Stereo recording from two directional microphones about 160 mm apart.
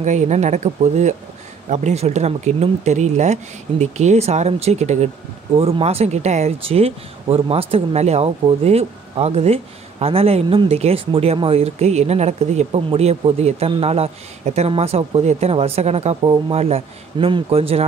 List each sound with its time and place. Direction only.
0.0 s speech: 45° right (ahead or behind)